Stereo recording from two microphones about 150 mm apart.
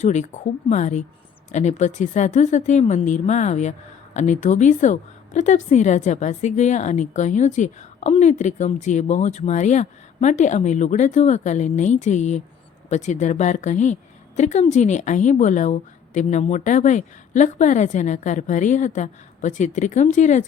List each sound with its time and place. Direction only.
0.0 s a woman's voice: 50° left (ahead or behind)